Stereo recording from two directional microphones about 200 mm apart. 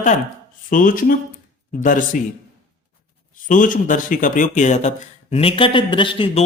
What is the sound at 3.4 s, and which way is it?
Speech, 40° left (ahead or behind).